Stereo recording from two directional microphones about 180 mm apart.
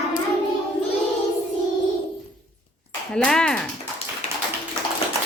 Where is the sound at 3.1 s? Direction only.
5° left (ahead or behind).